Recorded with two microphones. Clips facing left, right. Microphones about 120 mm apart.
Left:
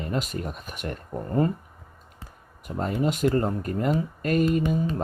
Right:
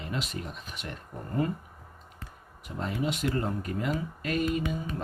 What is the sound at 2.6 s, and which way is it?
Speech, 45° left (ahead or behind).